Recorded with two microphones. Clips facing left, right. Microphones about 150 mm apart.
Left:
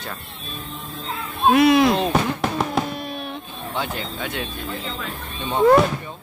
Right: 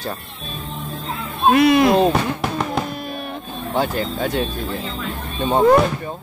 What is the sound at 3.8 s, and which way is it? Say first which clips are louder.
Speech: right 7 dB; 40° right (ahead or behind).